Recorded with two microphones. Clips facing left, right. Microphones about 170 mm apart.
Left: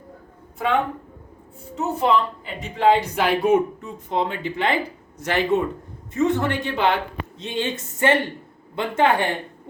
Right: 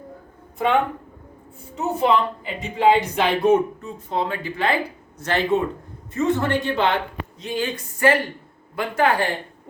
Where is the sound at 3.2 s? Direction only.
10° left (ahead or behind).